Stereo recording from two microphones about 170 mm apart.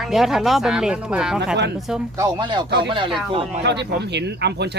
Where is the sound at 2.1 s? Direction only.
25° right (ahead or behind).